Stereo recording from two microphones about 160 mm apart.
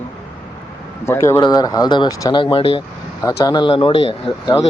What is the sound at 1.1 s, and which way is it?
Speech, 15° left (ahead or behind).